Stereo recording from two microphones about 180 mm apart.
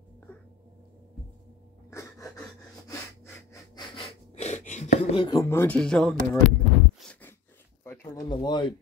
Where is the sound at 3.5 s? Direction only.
25° left (ahead or behind).